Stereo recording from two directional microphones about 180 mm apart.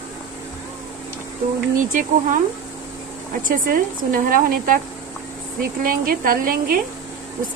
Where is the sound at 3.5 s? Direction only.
50° right (ahead or behind).